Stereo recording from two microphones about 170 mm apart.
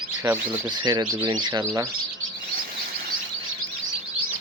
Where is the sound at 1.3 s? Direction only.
25° right (ahead or behind).